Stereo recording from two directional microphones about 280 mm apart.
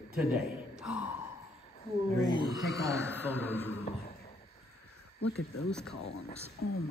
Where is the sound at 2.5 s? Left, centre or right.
Centre.